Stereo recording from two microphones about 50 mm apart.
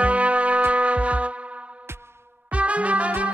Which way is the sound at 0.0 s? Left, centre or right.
Right.